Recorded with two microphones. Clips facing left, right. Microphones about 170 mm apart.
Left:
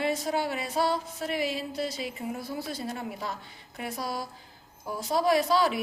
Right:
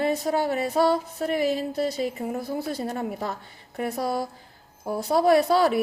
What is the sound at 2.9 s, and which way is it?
A woman's voice, 50° right (ahead or behind).